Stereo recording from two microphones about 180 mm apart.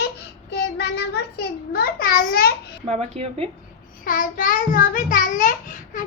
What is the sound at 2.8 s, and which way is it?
Speech, 35° right (ahead or behind).